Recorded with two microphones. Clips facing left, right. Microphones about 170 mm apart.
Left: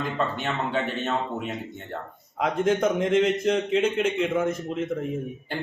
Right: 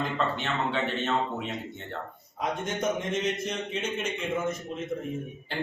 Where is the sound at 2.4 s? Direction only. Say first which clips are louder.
Left 7 dB; 90° left.